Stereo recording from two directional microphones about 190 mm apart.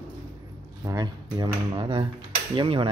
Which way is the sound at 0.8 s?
20° right (ahead or behind).